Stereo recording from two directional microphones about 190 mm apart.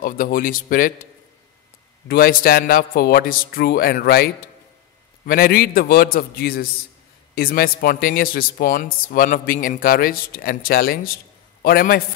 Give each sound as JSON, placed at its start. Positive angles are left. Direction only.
{"t": 0.0, "sound": "a man's voice", "side_deg": 45}
{"t": 2.0, "sound": "a man's voice", "side_deg": 50}